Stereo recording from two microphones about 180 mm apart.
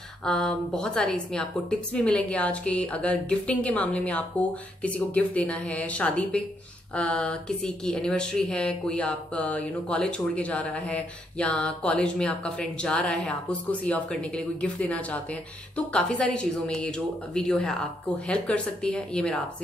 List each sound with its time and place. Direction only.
0.2 s speech: 5° left (ahead or behind)